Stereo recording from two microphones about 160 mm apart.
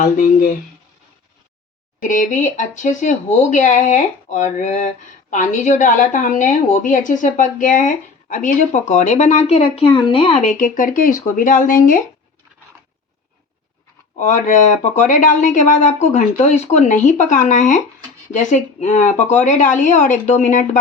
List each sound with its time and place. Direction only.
0.0 s speech: 55° left (ahead or behind)
2.0 s a woman's voice: 50° left (ahead or behind); by 10.3 s 35° left (ahead or behind)
10.4 s speech: 55° left (ahead or behind)
14.2 s a woman's voice: 55° left (ahead or behind)